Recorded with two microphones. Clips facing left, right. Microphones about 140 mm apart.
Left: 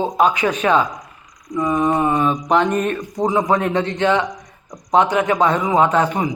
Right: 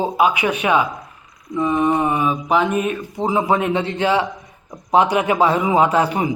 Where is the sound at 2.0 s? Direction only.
10° right (ahead or behind).